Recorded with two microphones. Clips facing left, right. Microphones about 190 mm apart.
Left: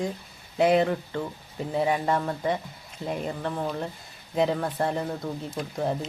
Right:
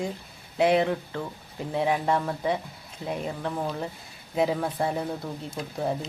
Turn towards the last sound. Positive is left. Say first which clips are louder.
# left 1 dB
turn(degrees=0)  # may be behind; listen again after turning